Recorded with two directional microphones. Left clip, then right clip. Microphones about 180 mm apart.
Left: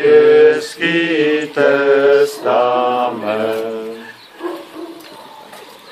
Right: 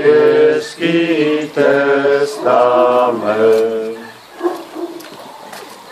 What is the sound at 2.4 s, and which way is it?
Mantra, 45° left (ahead or behind).